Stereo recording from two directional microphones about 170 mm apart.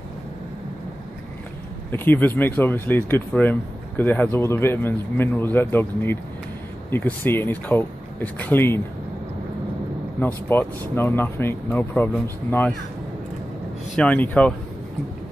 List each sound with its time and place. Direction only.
1.9 s speech: 10° left (ahead or behind)
10.2 s speech: 10° left (ahead or behind)
13.9 s speech: 10° left (ahead or behind)